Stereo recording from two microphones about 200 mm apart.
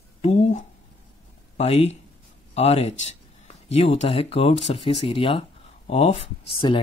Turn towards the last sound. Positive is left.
turn(degrees=25)  # may be behind; listen again after turning